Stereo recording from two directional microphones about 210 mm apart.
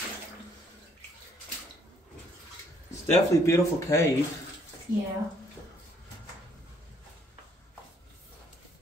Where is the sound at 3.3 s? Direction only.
15° left (ahead or behind).